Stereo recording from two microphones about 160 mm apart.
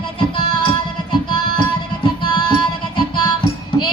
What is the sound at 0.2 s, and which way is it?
Music, 30° left (ahead or behind).